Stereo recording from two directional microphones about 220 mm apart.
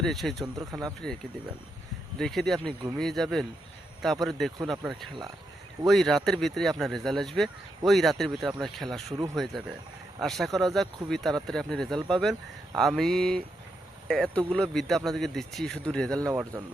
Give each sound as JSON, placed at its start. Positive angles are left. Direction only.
{"t": 0.0, "sound": "speech", "side_deg": 0}
{"t": 16.3, "sound": "speech", "side_deg": -10}